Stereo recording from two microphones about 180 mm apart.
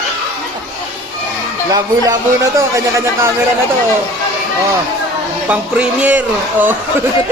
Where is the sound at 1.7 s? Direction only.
20° right (ahead or behind).